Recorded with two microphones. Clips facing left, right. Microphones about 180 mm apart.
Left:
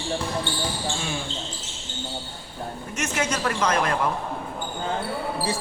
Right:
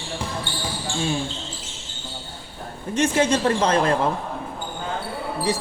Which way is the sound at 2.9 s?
30° right (ahead or behind).